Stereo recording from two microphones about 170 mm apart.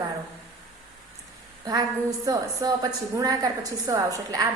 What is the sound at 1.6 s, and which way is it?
A woman's voice, 20° right (ahead or behind).